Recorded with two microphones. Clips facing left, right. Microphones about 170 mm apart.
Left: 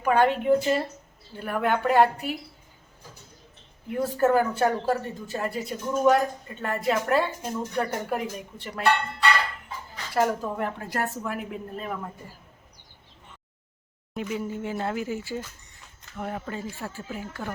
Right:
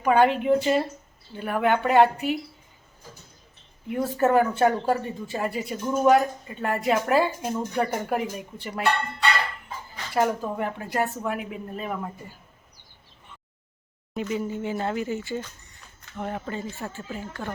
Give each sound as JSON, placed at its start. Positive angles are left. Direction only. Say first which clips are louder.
{"t": 0.0, "sound": "speech", "louder": "right 2 dB", "side_deg": 0}
{"t": 3.8, "sound": "speech", "louder": "even", "side_deg": -5}
{"t": 10.2, "sound": "speech", "louder": "right 1 dB", "side_deg": 0}
{"t": 14.1, "sound": "speech", "louder": "right 2 dB", "side_deg": 0}